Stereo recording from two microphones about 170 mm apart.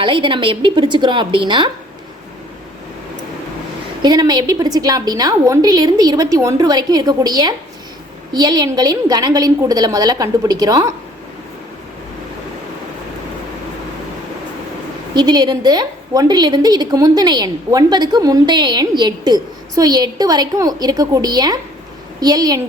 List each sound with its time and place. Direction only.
0.0 s a woman's voice: 30° right (ahead or behind)
4.0 s a woman's voice: 25° right (ahead or behind)
15.1 s a woman's voice: 25° right (ahead or behind)